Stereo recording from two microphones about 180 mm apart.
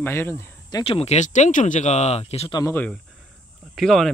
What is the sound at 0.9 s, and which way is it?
Speech, 40° left (ahead or behind).